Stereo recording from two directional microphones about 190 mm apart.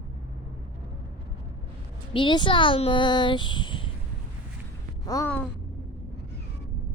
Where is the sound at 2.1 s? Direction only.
25° left (ahead or behind).